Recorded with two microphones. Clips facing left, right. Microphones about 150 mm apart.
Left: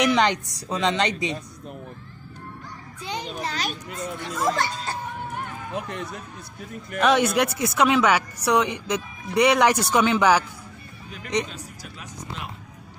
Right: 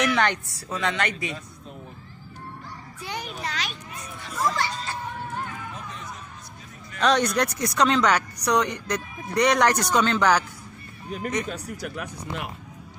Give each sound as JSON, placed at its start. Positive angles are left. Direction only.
{"t": 0.0, "sound": "a woman's voice", "side_deg": 15}
{"t": 3.0, "sound": "a woman's voice", "side_deg": 20}
{"t": 3.4, "sound": "a child's voice", "side_deg": 40}
{"t": 4.0, "sound": "speech", "side_deg": 80}
{"t": 5.8, "sound": "speech", "side_deg": 70}
{"t": 7.0, "sound": "speech", "side_deg": 5}
{"t": 11.1, "sound": "speech", "side_deg": -45}
{"t": 11.4, "sound": "speech", "side_deg": -70}